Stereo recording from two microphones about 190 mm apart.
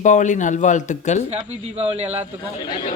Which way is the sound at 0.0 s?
40° left (ahead or behind).